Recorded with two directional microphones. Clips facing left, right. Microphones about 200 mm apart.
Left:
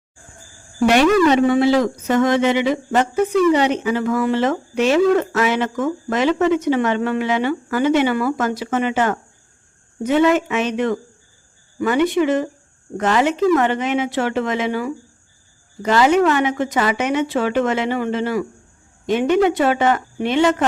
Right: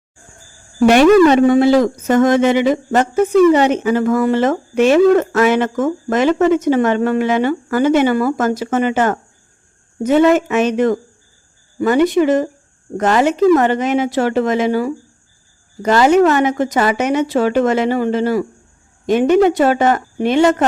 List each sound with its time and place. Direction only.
0.9 s a woman's voice: 50° right (ahead or behind)